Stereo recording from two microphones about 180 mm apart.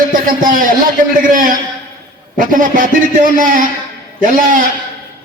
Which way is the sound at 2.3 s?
50° right (ahead or behind).